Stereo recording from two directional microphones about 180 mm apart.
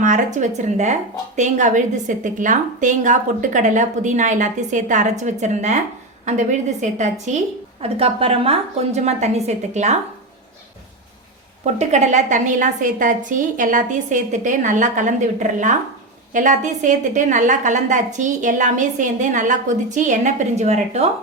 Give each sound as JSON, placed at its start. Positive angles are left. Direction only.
{"t": 0.0, "sound": "a woman's voice", "side_deg": -45}
{"t": 6.8, "sound": "a woman's voice", "side_deg": -40}
{"t": 11.6, "sound": "a woman's voice", "side_deg": -40}